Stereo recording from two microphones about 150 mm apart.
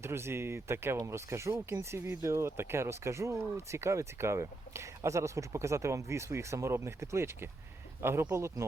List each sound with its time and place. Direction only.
0.0 s speech: 15° right (ahead or behind)